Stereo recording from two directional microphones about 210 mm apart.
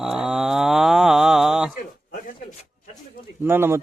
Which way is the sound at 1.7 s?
40° left (ahead or behind).